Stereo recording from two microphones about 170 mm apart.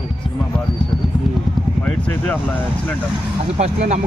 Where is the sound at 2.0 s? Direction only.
10° left (ahead or behind).